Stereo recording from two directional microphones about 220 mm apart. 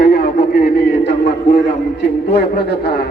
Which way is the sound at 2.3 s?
50° left (ahead or behind).